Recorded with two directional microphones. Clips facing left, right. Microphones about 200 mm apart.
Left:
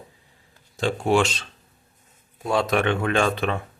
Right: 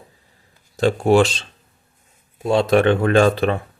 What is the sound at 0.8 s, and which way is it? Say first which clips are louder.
Speech: right 6 dB; 40° right (ahead or behind).